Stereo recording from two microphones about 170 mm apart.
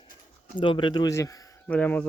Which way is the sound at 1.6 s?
10° left (ahead or behind).